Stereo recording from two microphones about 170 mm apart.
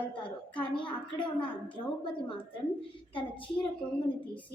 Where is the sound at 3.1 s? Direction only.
30° left (ahead or behind).